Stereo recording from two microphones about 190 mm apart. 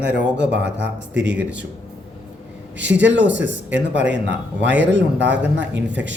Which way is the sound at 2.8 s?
70° right (ahead or behind).